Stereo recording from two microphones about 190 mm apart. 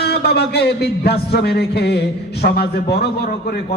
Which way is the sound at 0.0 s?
60° left (ahead or behind).